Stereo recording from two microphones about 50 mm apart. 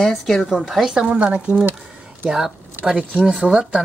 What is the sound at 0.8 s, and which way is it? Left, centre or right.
Speech, centre.